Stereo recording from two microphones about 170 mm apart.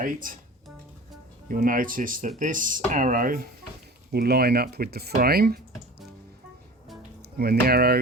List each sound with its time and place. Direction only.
0.0 s speech: 55° right (ahead or behind)
1.5 s speech: 55° right (ahead or behind)
4.1 s speech: 65° right (ahead or behind)
7.2 s speech: 70° right (ahead or behind)